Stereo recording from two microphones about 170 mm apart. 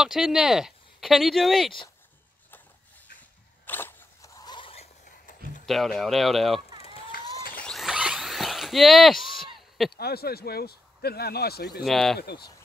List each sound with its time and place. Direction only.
0.0 s speech: 5° right (ahead or behind)
3.2 s a sound: 10° left (ahead or behind); by 4.8 s 30° left (ahead or behind)
5.0 s a sound: 50° left (ahead or behind)
5.7 s speech: centre (ahead or behind)
6.8 s a sound: 35° left (ahead or behind)
7.5 s zipper: 5° left (ahead or behind)
9.8 s speech: 70° left (ahead or behind)
11.8 s speech: centre (ahead or behind)
12.2 s speech: 70° left (ahead or behind)